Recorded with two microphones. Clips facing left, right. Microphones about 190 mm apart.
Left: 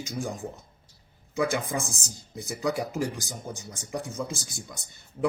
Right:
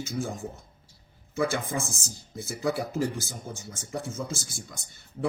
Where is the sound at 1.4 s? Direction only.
15° left (ahead or behind).